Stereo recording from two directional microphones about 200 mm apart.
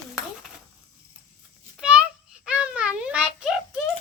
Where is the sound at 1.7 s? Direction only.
5° right (ahead or behind).